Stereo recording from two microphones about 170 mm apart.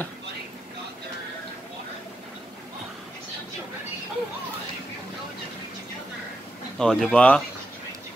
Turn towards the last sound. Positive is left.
turn(degrees=5)  # may be behind; listen again after turning